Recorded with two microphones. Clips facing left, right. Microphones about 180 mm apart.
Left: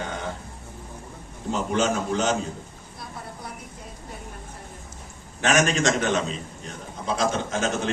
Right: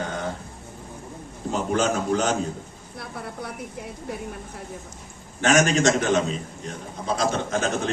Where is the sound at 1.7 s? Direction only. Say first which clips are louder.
Right 2 dB; 45° right (ahead or behind).